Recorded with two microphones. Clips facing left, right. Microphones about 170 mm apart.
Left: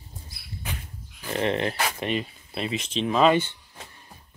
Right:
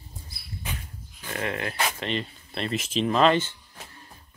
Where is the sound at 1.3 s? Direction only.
25° left (ahead or behind).